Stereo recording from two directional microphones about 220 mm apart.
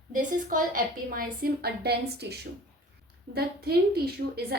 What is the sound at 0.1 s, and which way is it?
A woman's voice, 35° right (ahead or behind).